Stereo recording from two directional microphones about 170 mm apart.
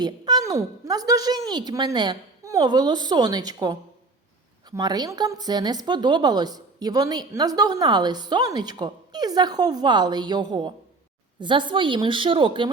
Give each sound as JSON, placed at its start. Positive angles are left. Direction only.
{"t": 0.0, "sound": "a woman's voice", "side_deg": -25}